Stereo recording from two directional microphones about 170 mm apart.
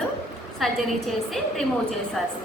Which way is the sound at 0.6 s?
Centre (ahead or behind).